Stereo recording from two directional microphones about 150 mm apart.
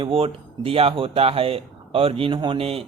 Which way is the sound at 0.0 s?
40° right (ahead or behind).